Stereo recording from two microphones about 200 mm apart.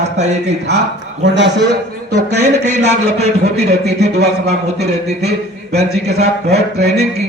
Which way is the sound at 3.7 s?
55° right (ahead or behind).